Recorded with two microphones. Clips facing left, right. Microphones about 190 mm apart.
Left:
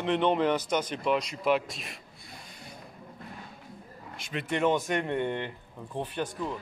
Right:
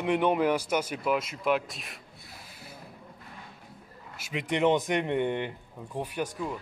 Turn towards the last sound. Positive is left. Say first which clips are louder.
# even
turn(degrees=-10)  # may be behind; listen again after turning